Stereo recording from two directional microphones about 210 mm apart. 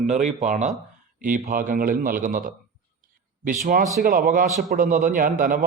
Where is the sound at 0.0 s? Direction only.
35° right (ahead or behind).